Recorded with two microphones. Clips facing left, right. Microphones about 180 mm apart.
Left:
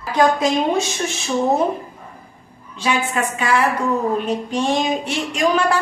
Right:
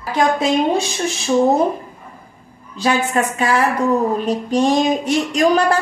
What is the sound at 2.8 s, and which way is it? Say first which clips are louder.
A woman's voice: right 3 dB; 40° right (ahead or behind).